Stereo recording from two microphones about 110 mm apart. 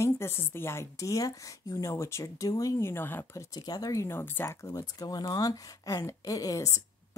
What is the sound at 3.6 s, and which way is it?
Speech, 35° left (ahead or behind).